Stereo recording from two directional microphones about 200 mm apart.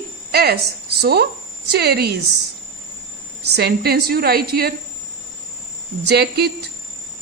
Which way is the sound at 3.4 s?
55° right (ahead or behind).